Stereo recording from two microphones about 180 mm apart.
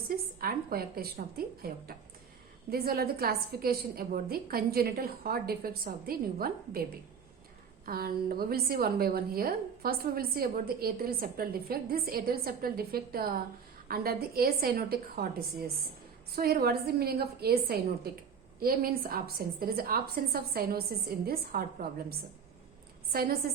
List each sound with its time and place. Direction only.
0.3 s a woman's voice: 55° right (ahead or behind)
2.6 s a woman's voice: 60° right (ahead or behind)
7.9 s a woman's voice: 55° right (ahead or behind)
23.1 s a woman's voice: 55° right (ahead or behind)